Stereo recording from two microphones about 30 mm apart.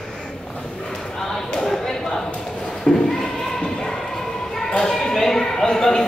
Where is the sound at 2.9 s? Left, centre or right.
Left.